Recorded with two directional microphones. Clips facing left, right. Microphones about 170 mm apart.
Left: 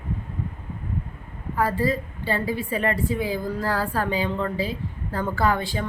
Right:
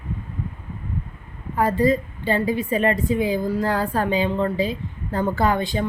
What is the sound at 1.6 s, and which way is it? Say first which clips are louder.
A woman's voice: right 4 dB; 20° right (ahead or behind).